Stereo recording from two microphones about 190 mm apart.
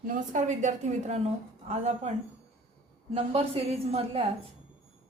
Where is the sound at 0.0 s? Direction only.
40° right (ahead or behind).